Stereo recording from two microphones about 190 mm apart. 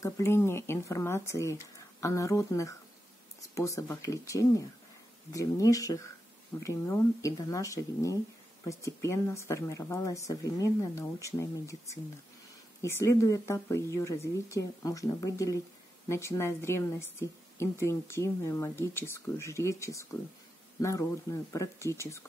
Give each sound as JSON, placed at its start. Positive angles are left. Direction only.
{"t": 0.0, "sound": "speech", "side_deg": 15}